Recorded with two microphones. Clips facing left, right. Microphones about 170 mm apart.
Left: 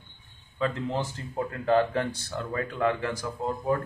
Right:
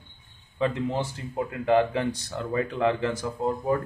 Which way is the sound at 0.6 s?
15° right (ahead or behind).